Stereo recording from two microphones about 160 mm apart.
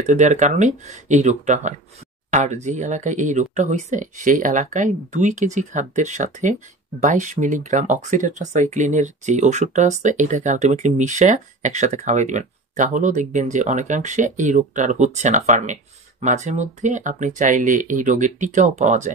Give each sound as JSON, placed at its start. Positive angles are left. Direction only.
{"t": 0.0, "sound": "speech", "side_deg": -50}